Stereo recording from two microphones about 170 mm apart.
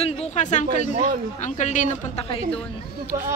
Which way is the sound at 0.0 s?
45° left (ahead or behind).